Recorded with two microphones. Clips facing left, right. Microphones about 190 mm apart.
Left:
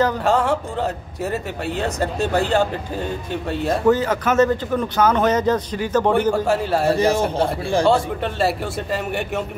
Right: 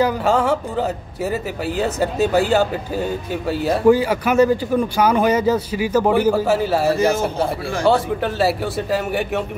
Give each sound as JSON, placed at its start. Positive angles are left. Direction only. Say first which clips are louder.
{"t": 0.0, "sound": "a man's voice", "louder": "right 1 dB", "side_deg": 0}
{"t": 7.3, "sound": "a man's voice", "louder": "left 2 dB", "side_deg": 30}
{"t": 7.9, "sound": "a man's voice", "louder": "right 1 dB", "side_deg": 0}